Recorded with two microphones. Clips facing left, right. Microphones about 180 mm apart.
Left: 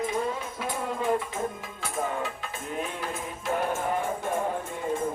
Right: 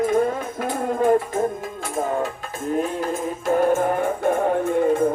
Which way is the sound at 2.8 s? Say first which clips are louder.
Right 9 dB; 45° right (ahead or behind).